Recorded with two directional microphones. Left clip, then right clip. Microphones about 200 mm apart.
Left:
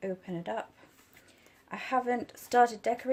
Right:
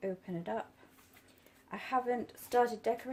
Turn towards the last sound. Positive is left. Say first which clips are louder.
# left 6 dB
turn(degrees=45)  # may be behind; listen again after turning